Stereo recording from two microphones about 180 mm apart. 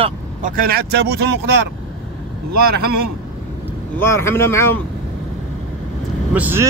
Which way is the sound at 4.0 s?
15° left (ahead or behind).